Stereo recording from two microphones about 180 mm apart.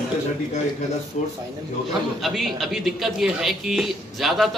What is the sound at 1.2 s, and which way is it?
Speech, 40° left (ahead or behind).